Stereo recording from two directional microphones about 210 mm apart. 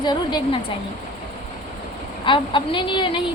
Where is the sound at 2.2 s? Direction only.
25° left (ahead or behind).